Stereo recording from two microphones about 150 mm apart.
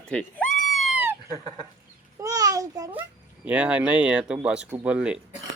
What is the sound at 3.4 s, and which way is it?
Speech, 10° right (ahead or behind).